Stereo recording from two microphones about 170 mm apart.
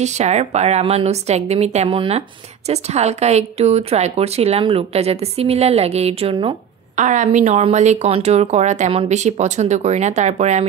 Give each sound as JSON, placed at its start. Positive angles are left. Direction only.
{"t": 0.0, "sound": "a woman's voice", "side_deg": -40}
{"t": 7.0, "sound": "speech", "side_deg": -45}